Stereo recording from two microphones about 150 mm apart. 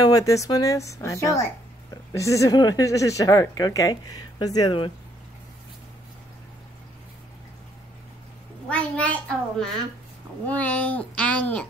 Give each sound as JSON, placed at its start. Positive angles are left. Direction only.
{"t": 0.0, "sound": "a woman's voice", "side_deg": 25}
{"t": 8.6, "sound": "a child's voice", "side_deg": 10}